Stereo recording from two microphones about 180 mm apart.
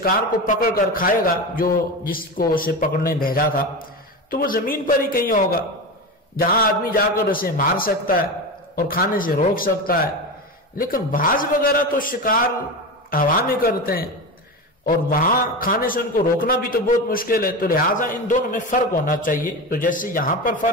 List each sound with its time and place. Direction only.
0.0 s a man's voice: 55° left (ahead or behind)